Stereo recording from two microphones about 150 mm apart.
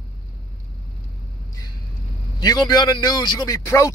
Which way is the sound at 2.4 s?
25° left (ahead or behind).